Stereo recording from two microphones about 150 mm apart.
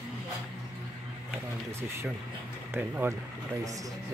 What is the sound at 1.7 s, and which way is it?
Speech, 15° right (ahead or behind).